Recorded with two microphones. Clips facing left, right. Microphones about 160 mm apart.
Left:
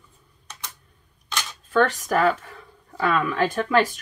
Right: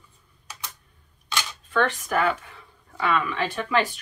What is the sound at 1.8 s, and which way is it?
Speech, 40° left (ahead or behind).